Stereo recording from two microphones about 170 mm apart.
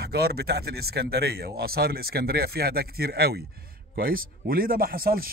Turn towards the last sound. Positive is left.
turn(degrees=-60)  # may be behind; listen again after turning